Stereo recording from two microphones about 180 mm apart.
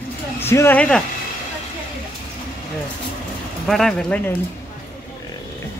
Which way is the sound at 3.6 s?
Centre (ahead or behind).